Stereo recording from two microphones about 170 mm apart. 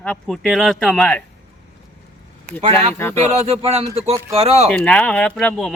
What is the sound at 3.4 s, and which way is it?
A man's voice, 40° right (ahead or behind).